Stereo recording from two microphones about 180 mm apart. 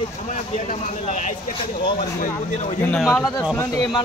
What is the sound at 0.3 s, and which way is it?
Speech, 45° left (ahead or behind).